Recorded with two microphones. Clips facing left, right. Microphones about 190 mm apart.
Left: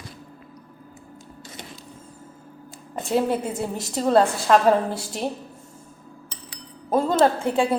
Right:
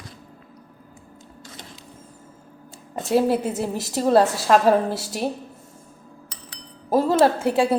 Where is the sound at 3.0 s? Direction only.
5° right (ahead or behind).